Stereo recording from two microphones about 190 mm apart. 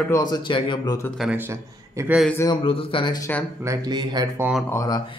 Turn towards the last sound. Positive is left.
turn(degrees=20)  # may be behind; listen again after turning